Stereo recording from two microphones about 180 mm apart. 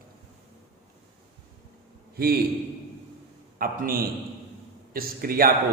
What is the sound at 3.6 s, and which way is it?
A man's voice, 55° right (ahead or behind).